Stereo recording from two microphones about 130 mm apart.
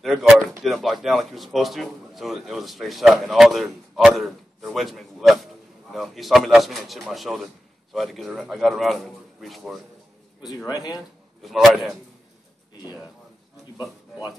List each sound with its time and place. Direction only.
0.0 s speech: centre (ahead or behind)
10.7 s speech: 30° left (ahead or behind)
11.4 s speech: centre (ahead or behind)